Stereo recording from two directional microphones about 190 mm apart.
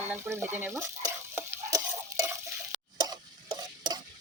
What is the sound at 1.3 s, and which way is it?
Stir, 15° right (ahead or behind).